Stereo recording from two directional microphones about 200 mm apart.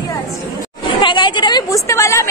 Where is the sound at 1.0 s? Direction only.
25° left (ahead or behind).